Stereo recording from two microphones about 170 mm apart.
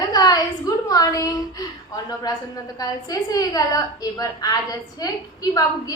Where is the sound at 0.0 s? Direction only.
25° left (ahead or behind).